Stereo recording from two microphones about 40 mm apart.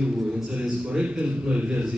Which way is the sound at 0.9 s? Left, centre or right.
Right.